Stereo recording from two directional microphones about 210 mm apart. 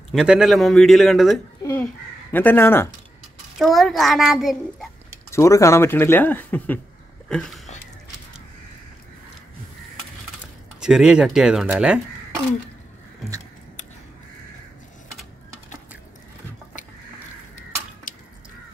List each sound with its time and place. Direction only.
0.1 s a man's voice: centre (ahead or behind)
1.6 s a sound: 15° left (ahead or behind)
2.3 s speech: 10° left (ahead or behind)
3.5 s a man's voice: centre (ahead or behind)
5.3 s speech: 15° left (ahead or behind)
10.8 s a man's voice: 5° right (ahead or behind)
18.1 s a sound: 40° left (ahead or behind)